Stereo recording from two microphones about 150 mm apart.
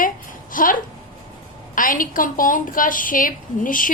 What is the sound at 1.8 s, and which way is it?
A woman's voice, 65° left (ahead or behind).